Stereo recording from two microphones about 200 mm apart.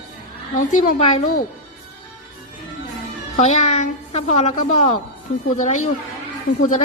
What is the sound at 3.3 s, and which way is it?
A woman's voice, 35° left (ahead or behind).